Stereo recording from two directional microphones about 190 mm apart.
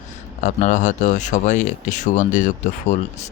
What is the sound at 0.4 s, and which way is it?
Speech, 40° left (ahead or behind).